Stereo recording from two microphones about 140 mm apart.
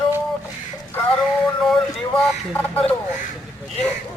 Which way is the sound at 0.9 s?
5° left (ahead or behind).